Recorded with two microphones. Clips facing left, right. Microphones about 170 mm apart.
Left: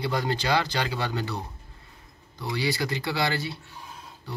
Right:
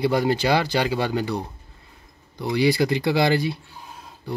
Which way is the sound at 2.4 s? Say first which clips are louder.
Right 8 dB; 15° right (ahead or behind).